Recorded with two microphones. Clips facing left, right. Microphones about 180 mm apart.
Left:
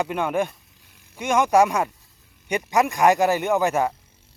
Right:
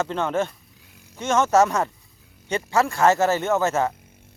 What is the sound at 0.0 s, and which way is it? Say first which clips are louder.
Speech: even; 10° left (ahead or behind).